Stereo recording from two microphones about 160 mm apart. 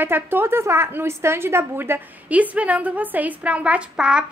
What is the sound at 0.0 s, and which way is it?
A woman's voice, 15° right (ahead or behind).